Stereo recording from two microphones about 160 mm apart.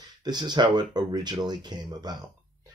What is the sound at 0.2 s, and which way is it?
Speech, 25° right (ahead or behind).